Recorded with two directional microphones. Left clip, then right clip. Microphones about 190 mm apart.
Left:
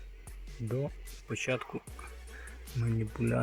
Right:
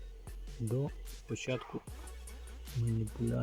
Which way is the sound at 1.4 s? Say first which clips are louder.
Left 5 dB; centre (ahead or behind).